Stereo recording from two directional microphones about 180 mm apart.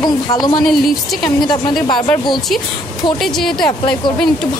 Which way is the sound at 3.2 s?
Centre (ahead or behind).